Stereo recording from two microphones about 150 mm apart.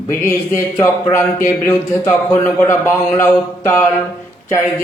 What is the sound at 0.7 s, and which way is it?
Speech, 15° left (ahead or behind).